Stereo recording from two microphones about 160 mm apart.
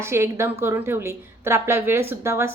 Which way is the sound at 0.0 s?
15° right (ahead or behind).